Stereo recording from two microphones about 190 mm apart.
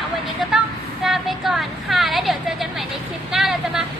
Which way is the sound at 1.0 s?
Centre (ahead or behind).